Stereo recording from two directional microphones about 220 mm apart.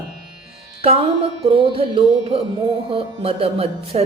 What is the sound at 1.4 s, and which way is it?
A woman's voice, 25° right (ahead or behind).